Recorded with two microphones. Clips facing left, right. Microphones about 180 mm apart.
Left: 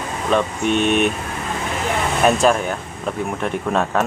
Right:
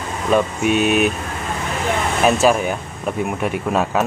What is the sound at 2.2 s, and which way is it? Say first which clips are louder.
Speech: right 1 dB; 5° right (ahead or behind).